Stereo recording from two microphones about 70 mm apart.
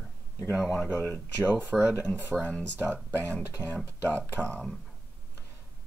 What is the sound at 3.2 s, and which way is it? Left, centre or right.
Speech, left.